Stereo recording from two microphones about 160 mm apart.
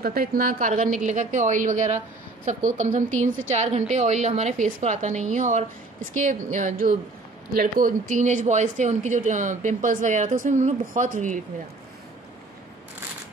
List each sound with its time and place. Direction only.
0.0 s a woman's voice: 70° right (ahead or behind); by 11.3 s 50° right (ahead or behind)